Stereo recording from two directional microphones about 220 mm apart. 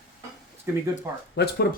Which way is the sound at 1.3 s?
45° left (ahead or behind).